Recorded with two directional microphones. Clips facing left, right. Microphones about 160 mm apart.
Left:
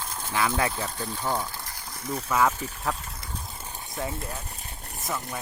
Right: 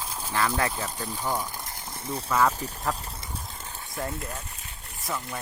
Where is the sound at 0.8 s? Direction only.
10° right (ahead or behind).